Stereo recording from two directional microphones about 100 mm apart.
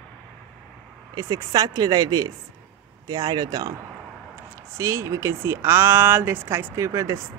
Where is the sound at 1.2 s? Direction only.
35° right (ahead or behind).